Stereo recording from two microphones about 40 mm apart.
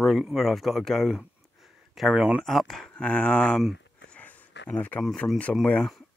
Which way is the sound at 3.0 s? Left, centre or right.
Left.